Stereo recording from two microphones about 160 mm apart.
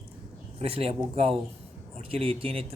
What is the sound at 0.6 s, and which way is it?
A man's voice, 40° right (ahead or behind).